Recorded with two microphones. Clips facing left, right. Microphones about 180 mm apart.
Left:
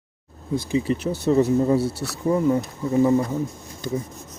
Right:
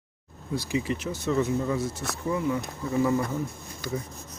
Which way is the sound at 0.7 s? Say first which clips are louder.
Left 6 dB; 30° left (ahead or behind).